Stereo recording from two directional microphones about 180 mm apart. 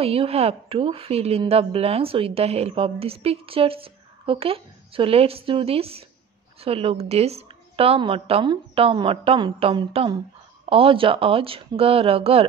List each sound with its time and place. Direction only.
0.0 s a woman's voice: 35° right (ahead or behind)